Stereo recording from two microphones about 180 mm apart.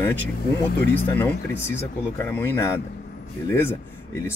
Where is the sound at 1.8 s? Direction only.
15° left (ahead or behind).